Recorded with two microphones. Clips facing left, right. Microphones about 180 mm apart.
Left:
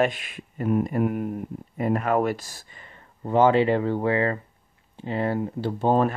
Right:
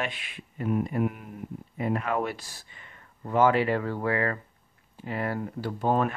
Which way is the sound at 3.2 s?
30° left (ahead or behind).